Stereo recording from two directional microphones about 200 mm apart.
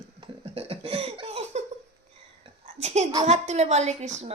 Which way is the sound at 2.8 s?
35° right (ahead or behind).